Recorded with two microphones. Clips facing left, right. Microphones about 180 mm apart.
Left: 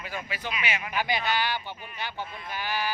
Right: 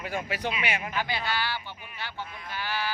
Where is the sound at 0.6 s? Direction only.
55° right (ahead or behind).